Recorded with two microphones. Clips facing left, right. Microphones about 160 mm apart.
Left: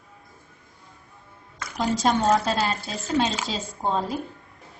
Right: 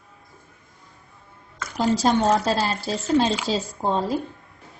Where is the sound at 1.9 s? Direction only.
35° right (ahead or behind).